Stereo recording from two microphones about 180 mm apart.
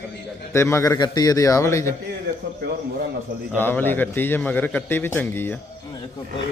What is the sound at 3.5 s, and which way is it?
A man's voice, 10° left (ahead or behind).